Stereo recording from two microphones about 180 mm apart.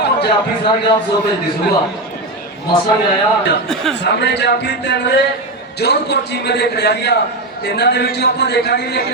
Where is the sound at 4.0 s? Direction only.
70° left (ahead or behind).